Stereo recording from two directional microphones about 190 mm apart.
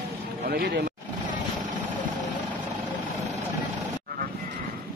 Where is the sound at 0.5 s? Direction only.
55° right (ahead or behind).